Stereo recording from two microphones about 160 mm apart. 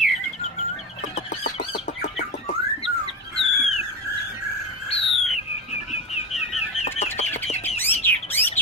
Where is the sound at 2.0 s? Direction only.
45° left (ahead or behind).